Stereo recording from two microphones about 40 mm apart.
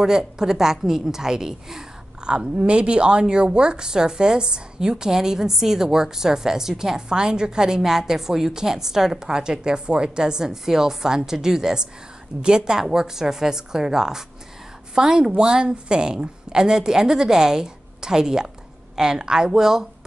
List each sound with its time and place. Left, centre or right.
0.4 s a woman's voice: centre